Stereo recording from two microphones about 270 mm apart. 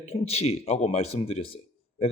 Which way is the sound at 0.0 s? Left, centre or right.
Left.